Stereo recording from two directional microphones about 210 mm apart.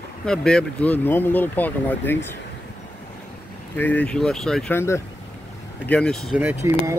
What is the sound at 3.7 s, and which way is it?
Speech, 10° left (ahead or behind).